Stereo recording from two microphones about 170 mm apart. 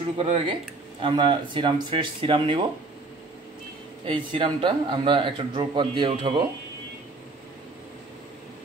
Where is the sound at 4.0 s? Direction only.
30° right (ahead or behind).